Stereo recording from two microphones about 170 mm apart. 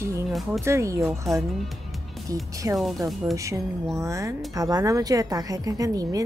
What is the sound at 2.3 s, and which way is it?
Speech, 20° right (ahead or behind).